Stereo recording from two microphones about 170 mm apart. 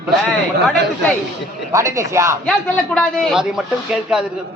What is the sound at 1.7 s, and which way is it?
Speech, 15° right (ahead or behind).